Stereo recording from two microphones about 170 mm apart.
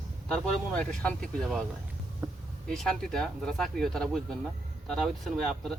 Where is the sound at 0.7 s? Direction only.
5° left (ahead or behind).